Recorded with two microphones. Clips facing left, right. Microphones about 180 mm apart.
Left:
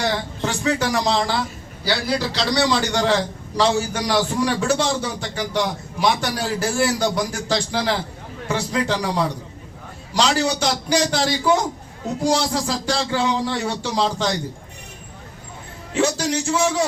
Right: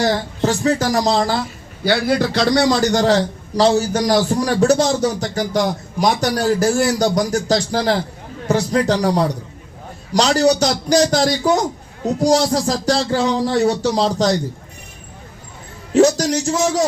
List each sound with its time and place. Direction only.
0.0 s speech: 40° right (ahead or behind)
1.8 s a man's voice: 50° right (ahead or behind)
15.9 s a man's voice: 40° right (ahead or behind)